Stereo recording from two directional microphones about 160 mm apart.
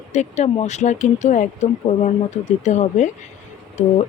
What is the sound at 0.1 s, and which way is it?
Speech, 45° left (ahead or behind).